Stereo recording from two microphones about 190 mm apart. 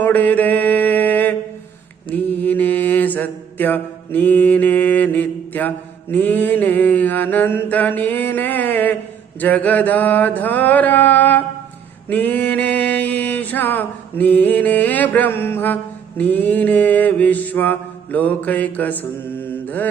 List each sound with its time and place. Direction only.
0.0 s mantra: 10° left (ahead or behind)